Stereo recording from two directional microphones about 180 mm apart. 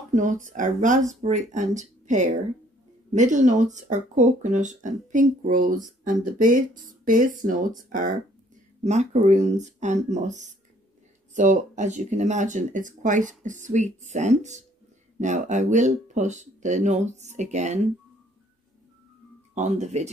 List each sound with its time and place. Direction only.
0.1 s speech: 45° right (ahead or behind)
19.5 s speech: 40° right (ahead or behind)